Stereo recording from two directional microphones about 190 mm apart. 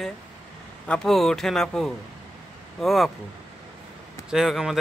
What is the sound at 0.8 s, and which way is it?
Speech, 5° left (ahead or behind).